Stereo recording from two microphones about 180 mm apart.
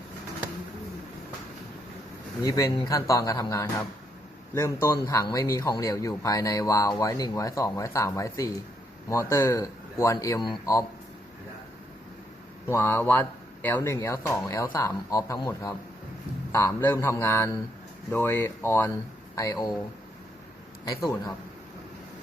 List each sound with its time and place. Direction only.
2.4 s speech: 20° left (ahead or behind)
12.7 s speech: 15° left (ahead or behind)